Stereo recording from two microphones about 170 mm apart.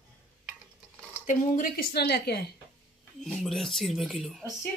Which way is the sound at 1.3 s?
50° left (ahead or behind).